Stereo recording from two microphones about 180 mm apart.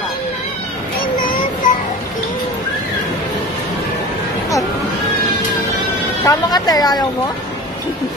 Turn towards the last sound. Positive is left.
turn(degrees=20)  # may be behind; listen again after turning